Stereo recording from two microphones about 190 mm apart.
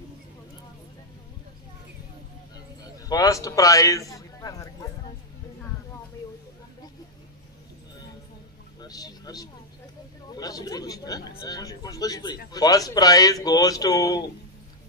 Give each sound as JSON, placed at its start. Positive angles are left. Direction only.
{"t": 3.1, "sound": "a man's voice", "side_deg": 20}
{"t": 8.8, "sound": "speech", "side_deg": 20}